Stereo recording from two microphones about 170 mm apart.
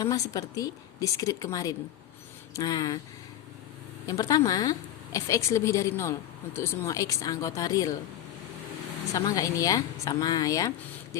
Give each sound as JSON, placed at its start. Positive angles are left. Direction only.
{"t": 0.0, "sound": "a woman's voice", "side_deg": 20}
{"t": 4.0, "sound": "a woman's voice", "side_deg": 20}
{"t": 9.1, "sound": "a woman's voice", "side_deg": 20}
{"t": 11.1, "sound": "a sound", "side_deg": 20}